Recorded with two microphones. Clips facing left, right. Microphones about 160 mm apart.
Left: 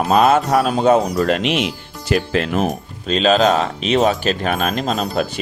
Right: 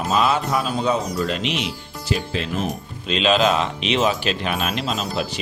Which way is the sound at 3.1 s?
40° left (ahead or behind).